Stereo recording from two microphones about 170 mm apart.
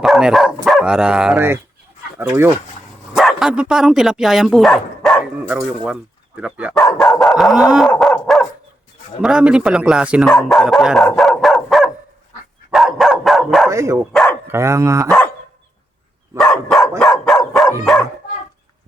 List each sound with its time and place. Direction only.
0.0 s speech: centre (ahead or behind)
3.1 s speech: 5° right (ahead or behind)
6.8 s dog: centre (ahead or behind)
9.2 s speech: 5° right (ahead or behind)
12.7 s dog: centre (ahead or behind)
13.7 s speech: 15° right (ahead or behind)
14.1 s dog: 5° left (ahead or behind)
14.4 s speech: 15° right (ahead or behind)
16.4 s dog: 5° left (ahead or behind)